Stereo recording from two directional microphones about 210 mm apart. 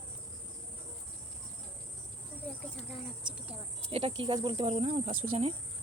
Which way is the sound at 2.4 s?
5° left (ahead or behind).